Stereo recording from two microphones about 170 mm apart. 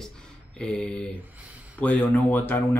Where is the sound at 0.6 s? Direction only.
5° left (ahead or behind).